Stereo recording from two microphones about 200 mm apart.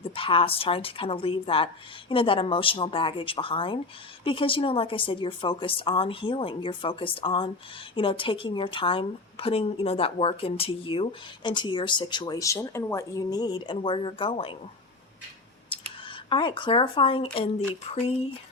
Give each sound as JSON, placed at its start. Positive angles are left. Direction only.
{"t": 0.0, "sound": "a woman's voice", "side_deg": 25}
{"t": 15.7, "sound": "clicking", "side_deg": 25}
{"t": 16.0, "sound": "a woman's voice", "side_deg": 25}